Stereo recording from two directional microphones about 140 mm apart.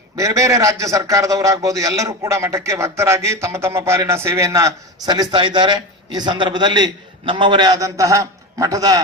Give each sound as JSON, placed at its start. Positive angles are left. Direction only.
{"t": 0.1, "sound": "a man's voice", "side_deg": -20}